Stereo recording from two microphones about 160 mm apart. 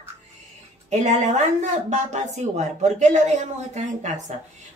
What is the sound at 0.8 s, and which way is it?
A woman's voice, 45° right (ahead or behind).